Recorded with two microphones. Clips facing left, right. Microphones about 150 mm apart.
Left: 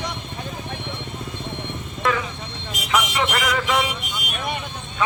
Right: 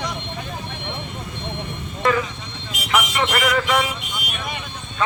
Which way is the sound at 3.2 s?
10° left (ahead or behind).